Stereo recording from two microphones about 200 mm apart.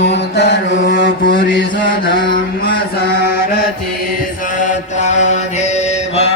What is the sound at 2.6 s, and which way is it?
Mantra, 50° left (ahead or behind).